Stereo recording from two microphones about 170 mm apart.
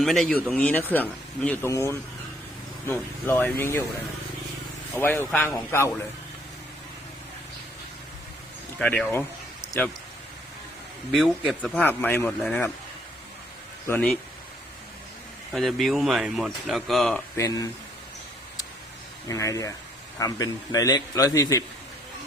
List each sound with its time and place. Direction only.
0.0 s speech: centre (ahead or behind)
4.9 s speech: 15° left (ahead or behind)
8.8 s speech: 5° left (ahead or behind)
11.1 s speech: centre (ahead or behind)
13.8 s speech: 10° left (ahead or behind)
15.5 s speech: centre (ahead or behind)
17.3 s a man's voice: 20° left (ahead or behind)
19.3 s a man's voice: 20° left (ahead or behind)